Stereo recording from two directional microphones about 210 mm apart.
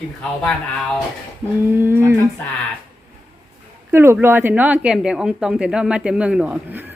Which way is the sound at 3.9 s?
10° right (ahead or behind).